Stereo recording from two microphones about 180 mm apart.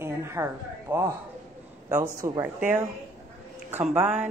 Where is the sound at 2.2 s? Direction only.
20° right (ahead or behind).